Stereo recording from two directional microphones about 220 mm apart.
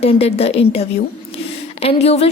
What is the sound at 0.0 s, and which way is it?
Speech, 30° left (ahead or behind).